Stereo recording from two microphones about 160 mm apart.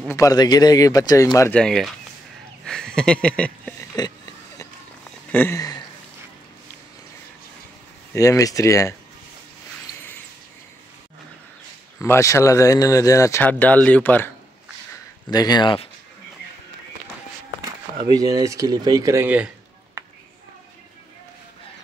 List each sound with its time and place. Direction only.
0.1 s a man's voice: 20° left (ahead or behind)
1.6 s speech: centre (ahead or behind)
2.6 s a sound: 5° left (ahead or behind)
3.9 s a sound: 25° left (ahead or behind)
5.3 s a sound: 10° left (ahead or behind)
8.1 s a man's voice: 20° left (ahead or behind)
12.0 s speech: 20° left (ahead or behind)
15.2 s a man's voice: 25° left (ahead or behind)
18.0 s speech: 25° right (ahead or behind)